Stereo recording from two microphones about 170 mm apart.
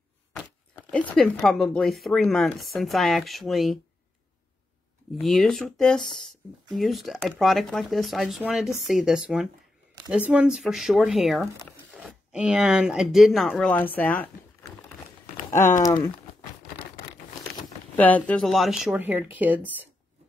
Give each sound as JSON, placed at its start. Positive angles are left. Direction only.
{"t": 0.9, "sound": "speech", "side_deg": 5}
{"t": 5.1, "sound": "speech", "side_deg": 0}
{"t": 15.8, "sound": "speech", "side_deg": 20}
{"t": 17.9, "sound": "speech", "side_deg": 10}